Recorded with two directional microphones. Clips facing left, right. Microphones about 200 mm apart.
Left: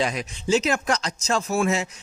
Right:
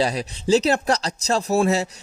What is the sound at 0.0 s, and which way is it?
Speech, 35° right (ahead or behind).